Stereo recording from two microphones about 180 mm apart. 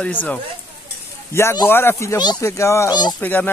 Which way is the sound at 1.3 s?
15° left (ahead or behind).